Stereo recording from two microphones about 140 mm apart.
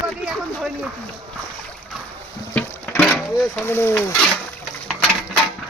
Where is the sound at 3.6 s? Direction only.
15° left (ahead or behind).